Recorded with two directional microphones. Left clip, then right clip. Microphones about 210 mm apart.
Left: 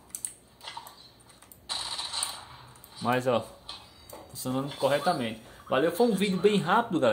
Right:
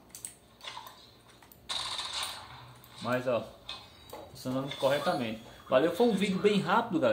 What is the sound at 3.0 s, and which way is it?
Speech, 45° left (ahead or behind).